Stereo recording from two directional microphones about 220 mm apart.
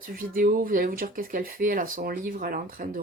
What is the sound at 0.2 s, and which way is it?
Speech, 40° right (ahead or behind).